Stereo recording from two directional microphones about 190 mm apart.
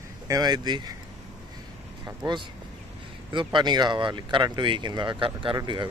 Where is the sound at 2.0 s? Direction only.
20° right (ahead or behind).